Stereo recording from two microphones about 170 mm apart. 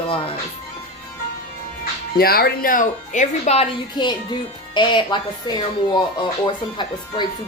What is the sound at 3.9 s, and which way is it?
A child's voice, 25° left (ahead or behind).